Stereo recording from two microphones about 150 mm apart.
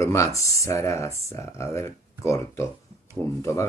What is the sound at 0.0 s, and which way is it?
Speech, 20° left (ahead or behind).